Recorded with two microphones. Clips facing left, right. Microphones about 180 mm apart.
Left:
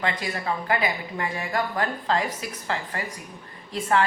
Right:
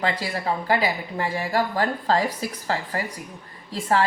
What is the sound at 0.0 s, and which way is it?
A woman's voice, 35° right (ahead or behind).